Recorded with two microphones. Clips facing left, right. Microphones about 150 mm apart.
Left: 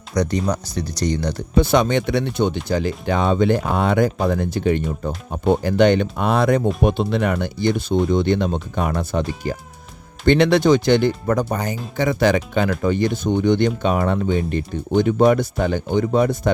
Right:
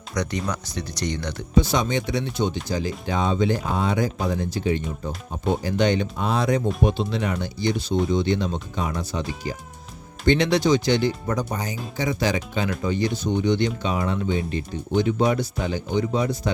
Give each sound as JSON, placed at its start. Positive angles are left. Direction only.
{"t": 0.1, "sound": "speech", "side_deg": 35}
{"t": 1.5, "sound": "speech", "side_deg": 60}